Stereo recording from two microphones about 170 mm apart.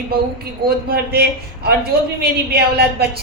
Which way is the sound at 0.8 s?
65° right (ahead or behind).